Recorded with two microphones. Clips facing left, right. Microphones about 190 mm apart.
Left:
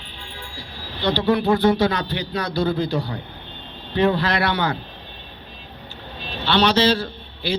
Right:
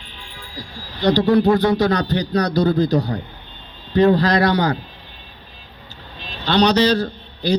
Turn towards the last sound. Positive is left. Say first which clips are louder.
# right 5 dB
turn(degrees=-45)  # may be behind; listen again after turning